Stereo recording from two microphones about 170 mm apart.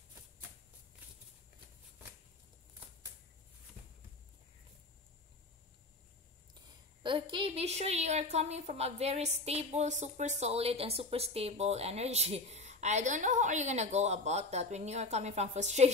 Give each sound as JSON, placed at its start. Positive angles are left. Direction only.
{"t": 6.5, "sound": "a woman's voice", "side_deg": -25}